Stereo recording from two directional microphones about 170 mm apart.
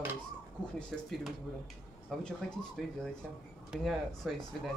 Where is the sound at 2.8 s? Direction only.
Centre (ahead or behind).